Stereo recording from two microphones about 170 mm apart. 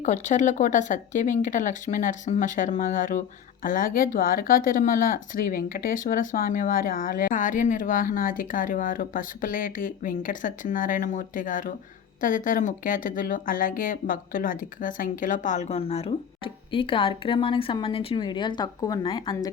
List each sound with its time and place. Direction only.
0.0 s speech: 45° left (ahead or behind); by 19.5 s 25° left (ahead or behind)